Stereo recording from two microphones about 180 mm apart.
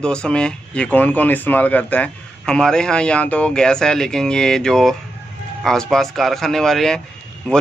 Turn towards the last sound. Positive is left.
turn(degrees=5)  # may be behind; listen again after turning